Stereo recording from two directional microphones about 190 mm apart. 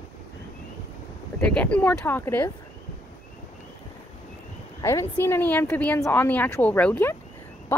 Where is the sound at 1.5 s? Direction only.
5° left (ahead or behind).